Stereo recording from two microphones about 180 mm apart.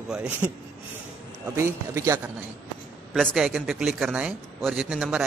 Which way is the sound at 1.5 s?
15° right (ahead or behind).